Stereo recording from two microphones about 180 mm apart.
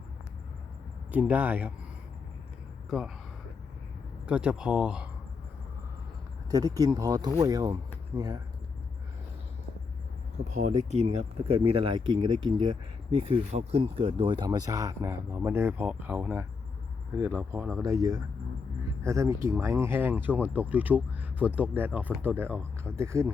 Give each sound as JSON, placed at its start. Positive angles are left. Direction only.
{"t": 1.1, "sound": "speech", "side_deg": -10}
{"t": 4.3, "sound": "speech", "side_deg": -5}
{"t": 6.5, "sound": "speech", "side_deg": -20}
{"t": 10.5, "sound": "speech", "side_deg": -40}